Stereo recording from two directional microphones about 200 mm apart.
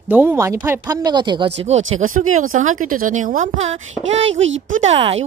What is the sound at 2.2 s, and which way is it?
A woman's voice, 40° right (ahead or behind).